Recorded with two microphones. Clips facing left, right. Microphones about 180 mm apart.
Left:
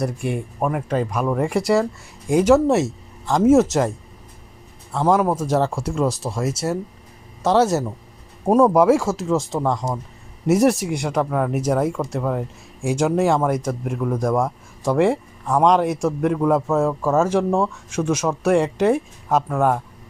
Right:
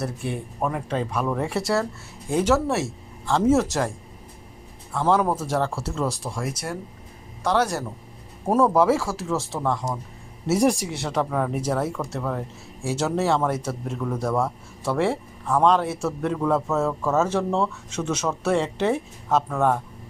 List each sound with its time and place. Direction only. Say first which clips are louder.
0.0 s speech: left 5 dB; 15° left (ahead or behind)
5.0 s speech: left 3 dB; 10° left (ahead or behind)
5.5 s speech: left 5 dB; 20° left (ahead or behind)